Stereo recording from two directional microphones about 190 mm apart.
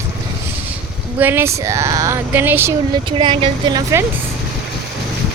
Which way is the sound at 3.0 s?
25° right (ahead or behind).